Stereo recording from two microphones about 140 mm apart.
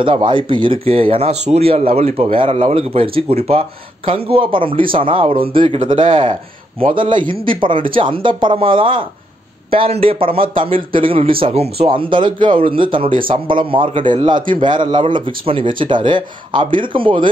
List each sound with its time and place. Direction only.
0.0 s speech: 35° right (ahead or behind)
12.1 s speech: 35° right (ahead or behind)